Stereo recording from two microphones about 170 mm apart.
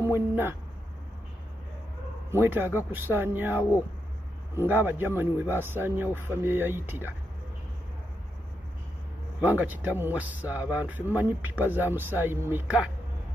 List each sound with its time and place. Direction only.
0.0 s speech: 15° right (ahead or behind)
2.3 s speech: 15° right (ahead or behind)
9.4 s speech: 10° right (ahead or behind)